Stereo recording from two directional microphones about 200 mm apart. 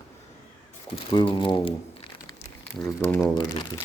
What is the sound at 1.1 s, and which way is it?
Speech, 25° left (ahead or behind).